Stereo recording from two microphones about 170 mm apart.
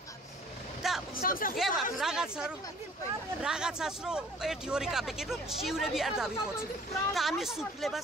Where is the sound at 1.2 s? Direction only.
55° left (ahead or behind).